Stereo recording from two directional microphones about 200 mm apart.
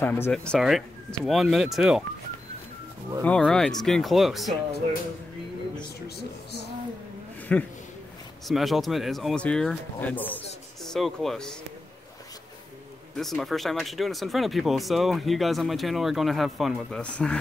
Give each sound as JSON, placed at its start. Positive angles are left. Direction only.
{"t": 0.0, "sound": "speech", "side_deg": 10}
{"t": 3.3, "sound": "speech", "side_deg": 5}
{"t": 6.0, "sound": "speech", "side_deg": 55}
{"t": 7.5, "sound": "speech", "side_deg": 5}
{"t": 13.1, "sound": "speech", "side_deg": 0}